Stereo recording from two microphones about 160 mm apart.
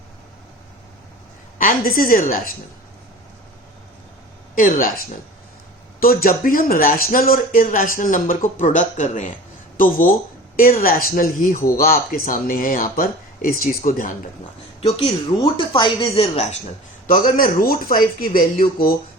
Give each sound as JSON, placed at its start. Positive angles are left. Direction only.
{"t": 1.5, "sound": "a woman's voice", "side_deg": 60}
{"t": 4.5, "sound": "speech", "side_deg": 60}
{"t": 6.0, "sound": "speech", "side_deg": 65}
{"t": 15.5, "sound": "speech", "side_deg": 30}
{"t": 17.1, "sound": "speech", "side_deg": 60}